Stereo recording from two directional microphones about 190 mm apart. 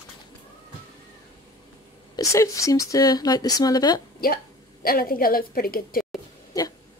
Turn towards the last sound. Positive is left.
turn(degrees=20)  # may be behind; listen again after turning